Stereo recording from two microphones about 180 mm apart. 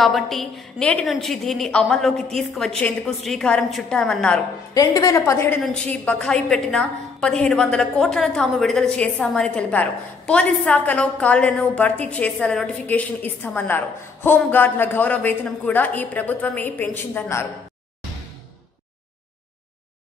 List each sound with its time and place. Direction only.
0.0 s a woman's voice: centre (ahead or behind)
4.7 s a woman's voice: 20° left (ahead or behind)